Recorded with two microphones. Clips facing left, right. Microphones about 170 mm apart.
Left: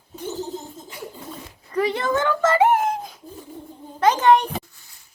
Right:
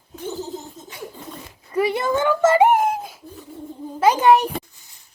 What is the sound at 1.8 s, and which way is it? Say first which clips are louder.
A child's voice: right 1 dB; 10° right (ahead or behind).